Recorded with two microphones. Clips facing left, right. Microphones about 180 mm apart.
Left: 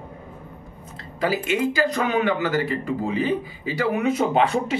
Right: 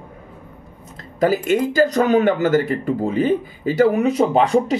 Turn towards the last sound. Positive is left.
turn(degrees=-40)  # may be behind; listen again after turning